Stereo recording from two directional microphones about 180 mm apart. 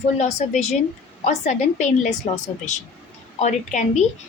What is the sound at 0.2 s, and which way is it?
A woman's voice, 40° left (ahead or behind).